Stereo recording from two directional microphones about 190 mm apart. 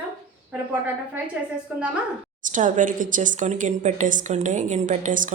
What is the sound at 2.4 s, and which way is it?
Speech, 45° right (ahead or behind).